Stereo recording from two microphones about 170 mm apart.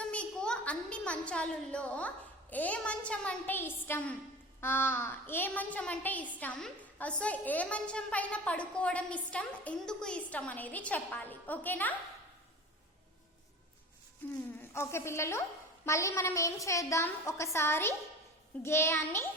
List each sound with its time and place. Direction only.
0.0 s a woman's voice: 5° left (ahead or behind)
14.7 s a woman's voice: 15° left (ahead or behind)